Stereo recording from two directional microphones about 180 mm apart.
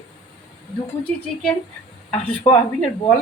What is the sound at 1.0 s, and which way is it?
Speech, 10° left (ahead or behind).